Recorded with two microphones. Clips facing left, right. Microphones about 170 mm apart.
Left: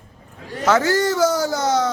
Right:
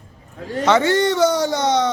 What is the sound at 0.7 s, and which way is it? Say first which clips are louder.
Speech: right 1 dB; 5° left (ahead or behind).